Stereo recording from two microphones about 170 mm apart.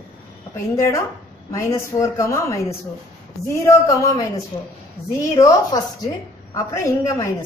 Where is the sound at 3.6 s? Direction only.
20° left (ahead or behind).